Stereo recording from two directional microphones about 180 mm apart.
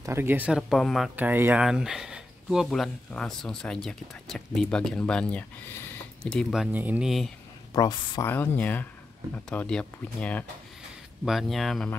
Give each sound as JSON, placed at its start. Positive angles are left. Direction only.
{"t": 0.0, "sound": "speech", "side_deg": -15}
{"t": 7.7, "sound": "speech", "side_deg": 25}
{"t": 8.3, "sound": "speech", "side_deg": 10}